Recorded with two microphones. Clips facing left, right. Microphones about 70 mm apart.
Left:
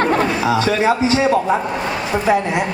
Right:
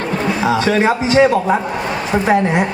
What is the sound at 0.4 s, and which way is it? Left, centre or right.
A woman's voice, right.